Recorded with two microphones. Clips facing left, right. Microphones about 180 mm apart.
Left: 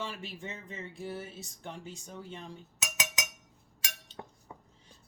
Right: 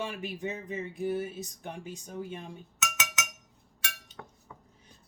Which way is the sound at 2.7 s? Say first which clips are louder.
Right 3 dB; 35° left (ahead or behind).